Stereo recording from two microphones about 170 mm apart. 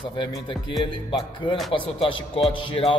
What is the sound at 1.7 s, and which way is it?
A man's voice, 30° left (ahead or behind).